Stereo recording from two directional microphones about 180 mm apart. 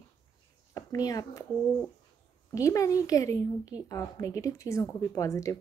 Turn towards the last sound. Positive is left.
turn(degrees=15)  # may be behind; listen again after turning